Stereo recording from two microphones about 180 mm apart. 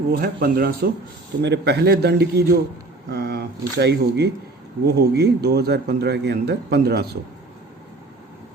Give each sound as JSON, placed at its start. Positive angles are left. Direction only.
{"t": 0.1, "sound": "speech", "side_deg": -60}
{"t": 1.4, "sound": "speech", "side_deg": -70}